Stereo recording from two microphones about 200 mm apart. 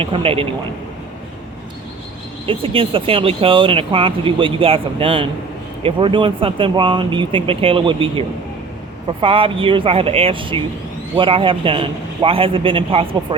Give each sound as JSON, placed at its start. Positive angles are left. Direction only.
{"t": 0.0, "sound": "speech", "side_deg": -25}
{"t": 2.5, "sound": "speech", "side_deg": -25}